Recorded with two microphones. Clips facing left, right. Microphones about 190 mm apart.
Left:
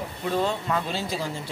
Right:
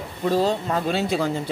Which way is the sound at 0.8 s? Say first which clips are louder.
Right 7 dB; 60° right (ahead or behind).